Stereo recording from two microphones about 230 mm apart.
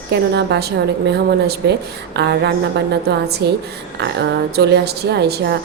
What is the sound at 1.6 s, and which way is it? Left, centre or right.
A woman's voice, right.